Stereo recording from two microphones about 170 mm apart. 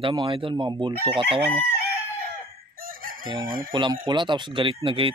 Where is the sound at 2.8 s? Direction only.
55° right (ahead or behind).